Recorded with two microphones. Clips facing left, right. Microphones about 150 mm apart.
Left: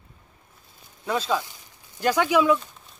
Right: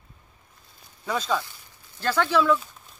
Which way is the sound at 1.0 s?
5° left (ahead or behind).